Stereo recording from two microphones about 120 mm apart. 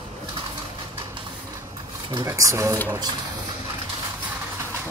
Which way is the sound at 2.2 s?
25° right (ahead or behind).